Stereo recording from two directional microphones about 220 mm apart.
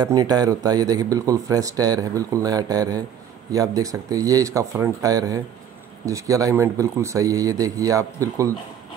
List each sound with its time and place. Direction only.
0.0 s speech: 20° right (ahead or behind)